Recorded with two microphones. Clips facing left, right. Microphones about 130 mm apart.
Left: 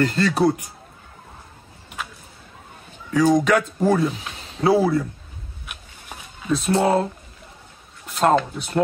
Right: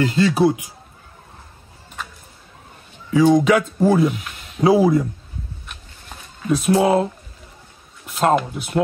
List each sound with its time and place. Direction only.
0.0 s speech: centre (ahead or behind)
3.1 s speech: 5° right (ahead or behind)
4.1 s a sound: 30° left (ahead or behind)
4.6 s speech: 15° right (ahead or behind)
5.7 s a sound: 10° left (ahead or behind)
6.5 s speech: 5° right (ahead or behind)
8.1 s speech: 5° right (ahead or behind)